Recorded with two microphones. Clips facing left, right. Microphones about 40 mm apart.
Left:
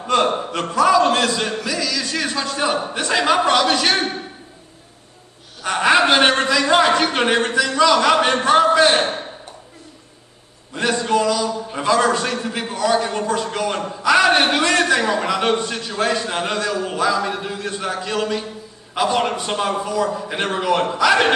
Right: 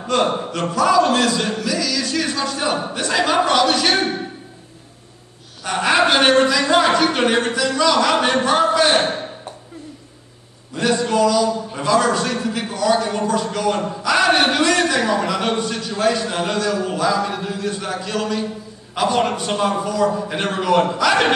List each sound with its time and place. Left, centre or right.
0.0 s a sound: centre
0.3 s a man's voice: left
1.6 s a man's voice: centre
5.6 s a man's voice: centre
8.3 s a man's voice: left
10.9 s a man's voice: left
14.1 s a man's voice: centre
14.4 s a man's voice: left
19.0 s a man's voice: centre